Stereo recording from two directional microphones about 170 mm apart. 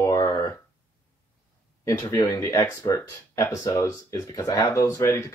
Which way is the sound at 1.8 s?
20° left (ahead or behind).